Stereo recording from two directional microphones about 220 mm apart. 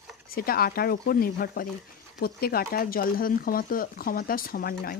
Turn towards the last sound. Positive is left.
turn(degrees=40)  # may be behind; listen again after turning